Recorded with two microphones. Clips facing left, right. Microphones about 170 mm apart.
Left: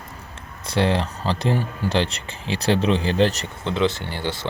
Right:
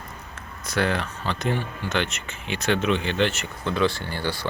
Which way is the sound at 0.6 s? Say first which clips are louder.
Left 4 dB; 30° left (ahead or behind).